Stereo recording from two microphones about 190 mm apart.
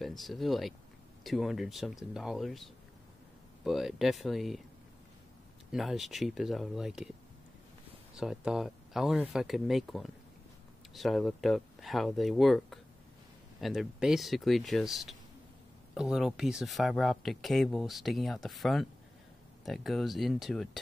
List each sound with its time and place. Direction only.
0.0 s speech: centre (ahead or behind)
5.7 s speech: centre (ahead or behind)
8.2 s speech: centre (ahead or behind)